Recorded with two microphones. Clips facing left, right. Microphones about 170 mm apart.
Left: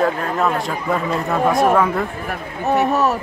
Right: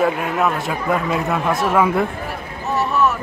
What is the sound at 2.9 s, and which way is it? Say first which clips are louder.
Speech: left 1 dB; 40° left (ahead or behind).